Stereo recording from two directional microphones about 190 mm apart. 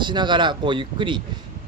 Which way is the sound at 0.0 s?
25° right (ahead or behind).